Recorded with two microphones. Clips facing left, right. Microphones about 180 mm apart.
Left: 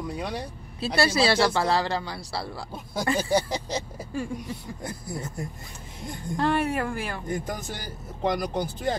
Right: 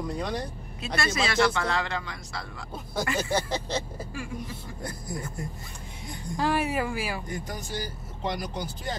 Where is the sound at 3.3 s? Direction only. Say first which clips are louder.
Left 3 dB; 10° left (ahead or behind).